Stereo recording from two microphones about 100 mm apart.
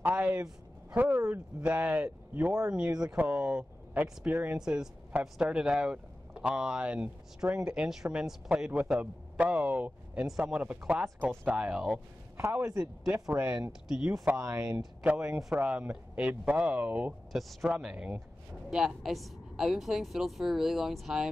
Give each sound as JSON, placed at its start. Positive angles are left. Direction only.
{"t": 0.0, "sound": "a sound", "side_deg": -15}
{"t": 0.9, "sound": "speech", "side_deg": -15}
{"t": 12.4, "sound": "speech", "side_deg": -25}
{"t": 13.1, "sound": "speech", "side_deg": -15}
{"t": 13.7, "sound": "a woman's voice", "side_deg": -5}
{"t": 14.4, "sound": "speech", "side_deg": -30}
{"t": 15.0, "sound": "speech", "side_deg": -10}
{"t": 17.3, "sound": "a woman's voice", "side_deg": 0}
{"t": 17.6, "sound": "a woman's voice", "side_deg": -10}